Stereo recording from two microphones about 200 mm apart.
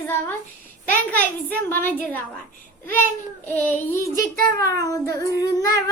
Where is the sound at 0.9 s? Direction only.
10° left (ahead or behind).